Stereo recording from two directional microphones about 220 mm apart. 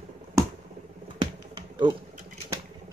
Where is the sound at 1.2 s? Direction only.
20° right (ahead or behind).